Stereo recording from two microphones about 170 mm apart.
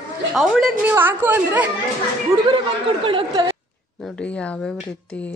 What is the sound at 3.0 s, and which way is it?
Speech, 30° right (ahead or behind).